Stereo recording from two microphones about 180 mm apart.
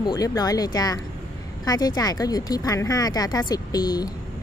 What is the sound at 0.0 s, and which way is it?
Speech, 20° left (ahead or behind).